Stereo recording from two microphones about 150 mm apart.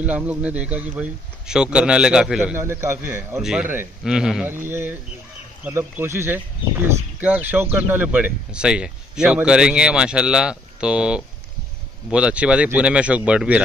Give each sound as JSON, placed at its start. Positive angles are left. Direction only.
{"t": 0.0, "sound": "a man's voice", "side_deg": -10}
{"t": 2.5, "sound": "speech", "side_deg": -15}
{"t": 3.3, "sound": "a man's voice", "side_deg": -5}